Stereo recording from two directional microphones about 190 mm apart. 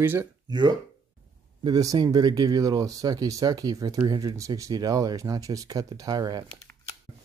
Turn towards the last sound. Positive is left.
turn(degrees=-20)  # may be behind; listen again after turning